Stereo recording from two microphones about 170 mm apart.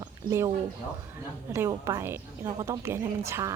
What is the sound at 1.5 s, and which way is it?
A woman's voice, 15° right (ahead or behind).